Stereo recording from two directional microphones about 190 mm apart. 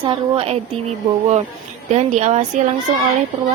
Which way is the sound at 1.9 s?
35° right (ahead or behind).